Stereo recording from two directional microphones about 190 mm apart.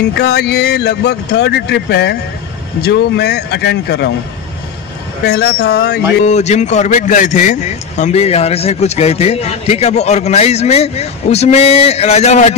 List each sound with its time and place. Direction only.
0.2 s speech: 60° left (ahead or behind)
5.2 s speech: 60° left (ahead or behind)
6.2 s a man's voice: 35° left (ahead or behind)